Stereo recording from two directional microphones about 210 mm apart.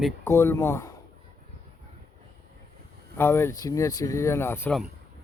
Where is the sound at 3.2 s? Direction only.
10° left (ahead or behind).